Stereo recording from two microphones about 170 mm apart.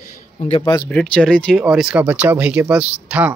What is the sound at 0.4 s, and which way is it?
Speech, 35° left (ahead or behind).